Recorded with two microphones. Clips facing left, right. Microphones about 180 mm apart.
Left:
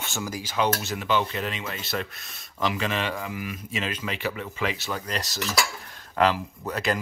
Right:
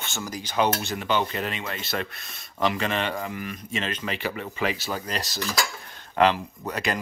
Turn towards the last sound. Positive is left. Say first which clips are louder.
# left 1 dB
turn(degrees=0)  # may be behind; listen again after turning